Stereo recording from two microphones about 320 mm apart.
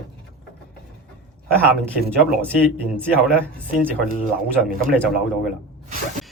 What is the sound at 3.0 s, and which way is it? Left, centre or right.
Speech, centre.